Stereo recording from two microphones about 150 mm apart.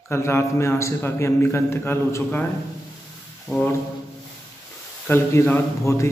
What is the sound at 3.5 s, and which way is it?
Brass instrument, centre (ahead or behind).